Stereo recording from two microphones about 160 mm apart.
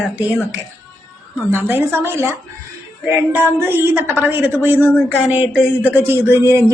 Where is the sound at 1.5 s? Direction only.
15° right (ahead or behind).